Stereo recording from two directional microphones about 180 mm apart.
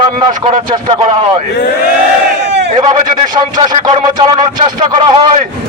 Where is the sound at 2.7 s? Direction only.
45° right (ahead or behind).